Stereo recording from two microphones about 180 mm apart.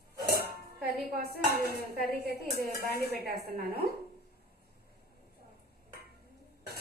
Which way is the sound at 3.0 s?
60° right (ahead or behind).